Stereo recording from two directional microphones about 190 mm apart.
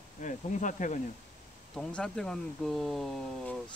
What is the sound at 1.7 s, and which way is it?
Speech, 5° left (ahead or behind).